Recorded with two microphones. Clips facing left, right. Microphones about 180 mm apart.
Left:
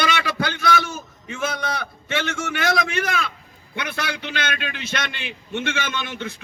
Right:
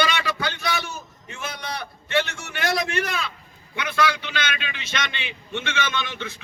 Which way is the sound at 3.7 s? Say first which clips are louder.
Right 4 dB; 55° left (ahead or behind).